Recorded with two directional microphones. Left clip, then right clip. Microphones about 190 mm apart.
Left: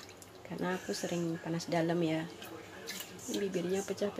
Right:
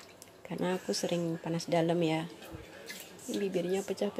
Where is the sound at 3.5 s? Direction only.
20° right (ahead or behind).